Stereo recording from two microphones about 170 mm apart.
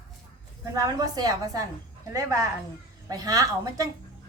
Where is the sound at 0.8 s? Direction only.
20° right (ahead or behind).